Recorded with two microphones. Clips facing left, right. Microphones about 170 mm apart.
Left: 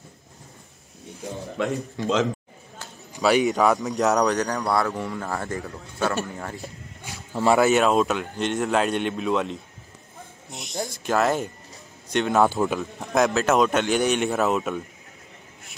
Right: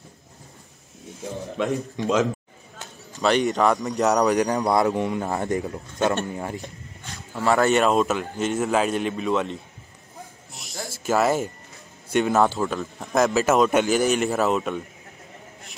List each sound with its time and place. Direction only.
1.6 s a man's voice: 15° right (ahead or behind)
3.2 s a man's voice: 5° left (ahead or behind)
4.4 s a man's voice: 15° right (ahead or behind)
7.3 s speech: 15° left (ahead or behind)
7.6 s a man's voice: centre (ahead or behind)
10.5 s a sound: centre (ahead or behind)
10.9 s a man's voice: 5° right (ahead or behind)
12.4 s speech: 15° left (ahead or behind)
12.7 s a man's voice: centre (ahead or behind)